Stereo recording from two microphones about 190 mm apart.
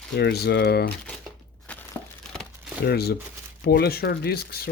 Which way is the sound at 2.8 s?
55° left (ahead or behind).